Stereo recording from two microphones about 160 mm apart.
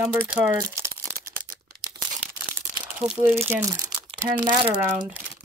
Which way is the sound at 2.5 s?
15° right (ahead or behind).